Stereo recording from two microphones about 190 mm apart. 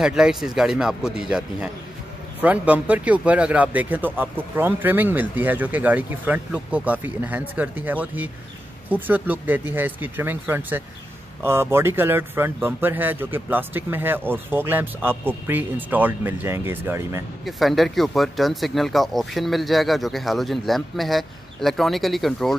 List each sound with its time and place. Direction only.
0.0 s speech: 5° right (ahead or behind)
17.5 s speech: centre (ahead or behind)